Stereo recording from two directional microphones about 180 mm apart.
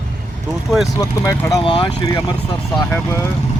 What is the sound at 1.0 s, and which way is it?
Speech, 20° left (ahead or behind).